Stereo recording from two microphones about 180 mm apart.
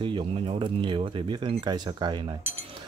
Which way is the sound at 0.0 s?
25° right (ahead or behind).